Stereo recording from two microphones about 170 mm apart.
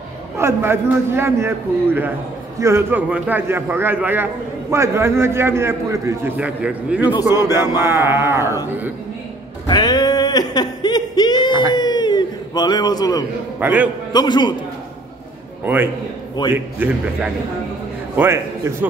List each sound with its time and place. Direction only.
0.4 s a man's voice: 15° right (ahead or behind)
9.7 s a sound: 25° left (ahead or behind)
13.6 s a man's voice: 10° right (ahead or behind)
14.1 s a man's voice: 25° left (ahead or behind)
15.6 s a man's voice: 10° right (ahead or behind)
16.4 s a man's voice: 25° left (ahead or behind)
18.1 s a man's voice: 15° right (ahead or behind)